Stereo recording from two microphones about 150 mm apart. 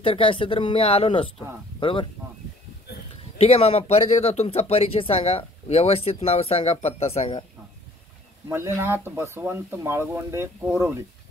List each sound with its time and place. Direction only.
0.0 s speech: 35° left (ahead or behind)
3.3 s speech: 40° left (ahead or behind)
8.5 s speech: 15° right (ahead or behind)